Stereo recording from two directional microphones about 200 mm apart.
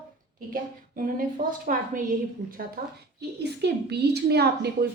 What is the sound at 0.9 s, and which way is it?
Speech, 45° right (ahead or behind).